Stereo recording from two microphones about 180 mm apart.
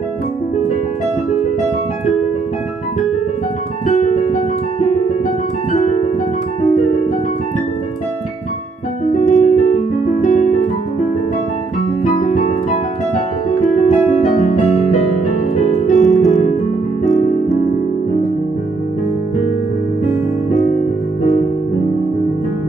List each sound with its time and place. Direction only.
3.8 s music: 40° left (ahead or behind)
9.1 s piano: 40° left (ahead or behind)
12.2 s music: 40° left (ahead or behind)
17.0 s music: centre (ahead or behind)